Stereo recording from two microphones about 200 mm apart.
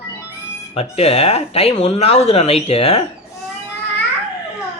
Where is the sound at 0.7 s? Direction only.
30° left (ahead or behind).